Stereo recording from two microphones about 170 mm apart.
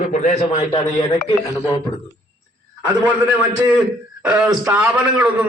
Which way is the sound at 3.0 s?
10° right (ahead or behind).